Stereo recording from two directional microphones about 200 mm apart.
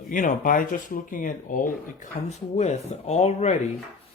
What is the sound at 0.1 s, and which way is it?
Speech, 40° left (ahead or behind).